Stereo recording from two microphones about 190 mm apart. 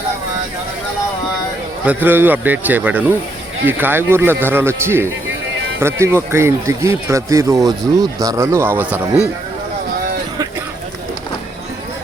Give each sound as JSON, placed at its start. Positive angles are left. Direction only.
{"t": 1.8, "sound": "speech", "side_deg": -10}